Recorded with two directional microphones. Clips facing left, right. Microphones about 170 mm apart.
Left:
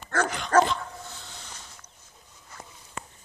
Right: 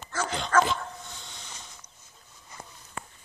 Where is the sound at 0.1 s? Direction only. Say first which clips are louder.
Left 5 dB; 60° left (ahead or behind).